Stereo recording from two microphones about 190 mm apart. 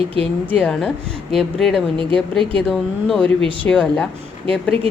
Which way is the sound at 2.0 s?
25° right (ahead or behind).